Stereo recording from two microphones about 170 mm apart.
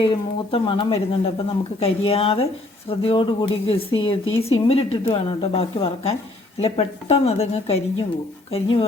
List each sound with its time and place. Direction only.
0.5 s speech: 30° left (ahead or behind)